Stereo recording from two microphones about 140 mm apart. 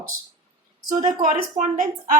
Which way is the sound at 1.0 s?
65° right (ahead or behind).